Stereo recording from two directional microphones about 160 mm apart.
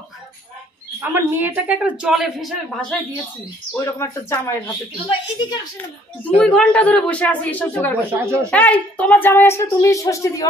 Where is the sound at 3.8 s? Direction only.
15° left (ahead or behind).